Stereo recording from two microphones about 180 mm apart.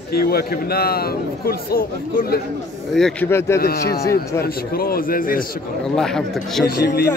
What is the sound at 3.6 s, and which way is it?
A man's voice, 60° left (ahead or behind).